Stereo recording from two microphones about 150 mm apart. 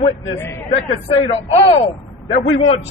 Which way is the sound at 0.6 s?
40° left (ahead or behind).